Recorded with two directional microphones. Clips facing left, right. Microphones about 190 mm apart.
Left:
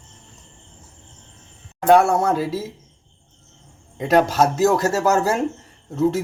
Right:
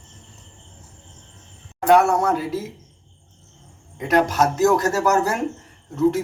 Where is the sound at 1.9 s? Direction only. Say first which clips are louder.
Left 1 dB; 30° left (ahead or behind).